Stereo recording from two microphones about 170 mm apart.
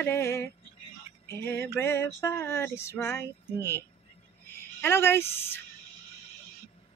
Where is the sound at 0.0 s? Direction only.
15° left (ahead or behind).